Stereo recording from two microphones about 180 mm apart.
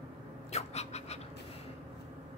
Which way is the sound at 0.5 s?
35° left (ahead or behind).